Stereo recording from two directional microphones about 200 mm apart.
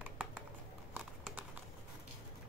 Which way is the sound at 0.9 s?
5° right (ahead or behind).